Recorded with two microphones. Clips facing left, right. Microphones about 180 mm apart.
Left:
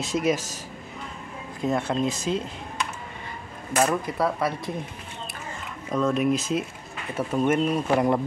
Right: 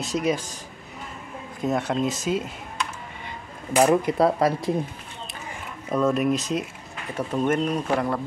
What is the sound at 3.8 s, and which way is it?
Speech, 25° right (ahead or behind).